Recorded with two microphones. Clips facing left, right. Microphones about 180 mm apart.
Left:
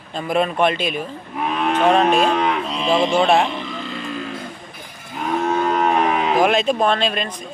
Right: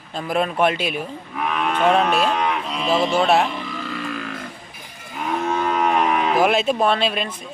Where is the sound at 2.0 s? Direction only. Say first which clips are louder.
Left 3 dB; 45° left (ahead or behind).